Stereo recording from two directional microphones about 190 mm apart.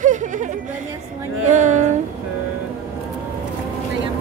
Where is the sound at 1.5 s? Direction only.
40° right (ahead or behind).